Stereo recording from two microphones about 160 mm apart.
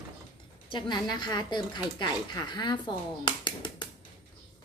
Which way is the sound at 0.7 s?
30° left (ahead or behind).